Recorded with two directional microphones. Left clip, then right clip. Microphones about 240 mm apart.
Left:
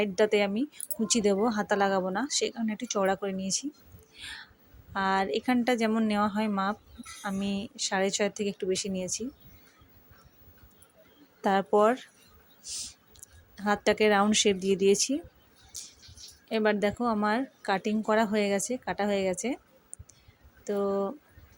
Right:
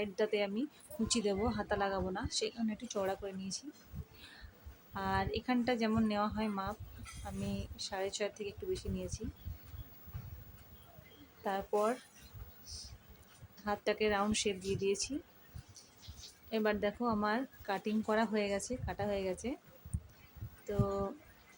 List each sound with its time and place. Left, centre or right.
0.0 s speech: left
4.2 s a sound: left
4.9 s speech: left
11.4 s speech: left
13.7 s speech: left
15.7 s a sound: left
16.5 s speech: left
20.7 s speech: left